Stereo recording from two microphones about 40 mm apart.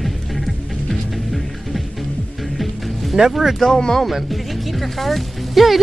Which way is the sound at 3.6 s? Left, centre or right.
Centre.